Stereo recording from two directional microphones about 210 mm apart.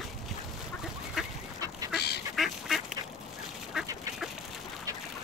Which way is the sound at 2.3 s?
Centre (ahead or behind).